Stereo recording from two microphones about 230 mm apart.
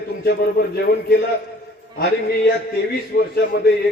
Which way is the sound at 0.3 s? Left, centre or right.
Left.